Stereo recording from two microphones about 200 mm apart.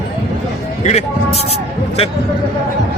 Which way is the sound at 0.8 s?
35° left (ahead or behind).